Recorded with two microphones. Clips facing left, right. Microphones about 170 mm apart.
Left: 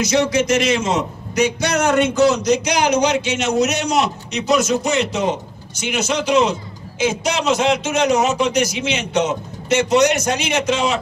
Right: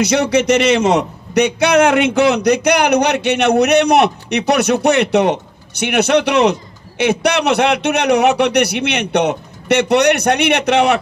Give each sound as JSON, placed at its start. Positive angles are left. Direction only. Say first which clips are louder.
{"t": 0.0, "sound": "a man's voice", "louder": "right 3 dB", "side_deg": -65}